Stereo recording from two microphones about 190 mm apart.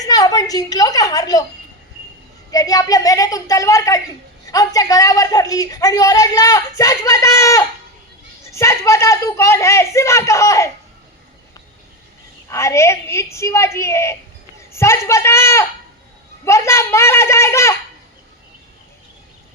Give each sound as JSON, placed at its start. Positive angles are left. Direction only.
{"t": 0.0, "sound": "a man's voice", "side_deg": 20}
{"t": 2.5, "sound": "a man's voice", "side_deg": 20}
{"t": 12.5, "sound": "speech", "side_deg": 15}